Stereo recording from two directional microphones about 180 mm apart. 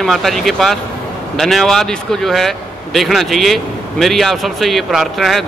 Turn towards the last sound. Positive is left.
turn(degrees=0)  # may be behind; listen again after turning